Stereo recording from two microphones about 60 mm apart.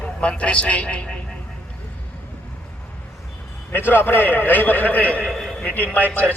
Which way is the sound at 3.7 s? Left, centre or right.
Left.